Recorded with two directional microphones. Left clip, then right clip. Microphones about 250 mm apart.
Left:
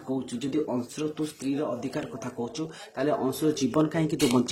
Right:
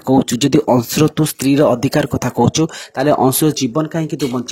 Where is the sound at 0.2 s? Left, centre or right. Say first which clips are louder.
Right 15 dB; right.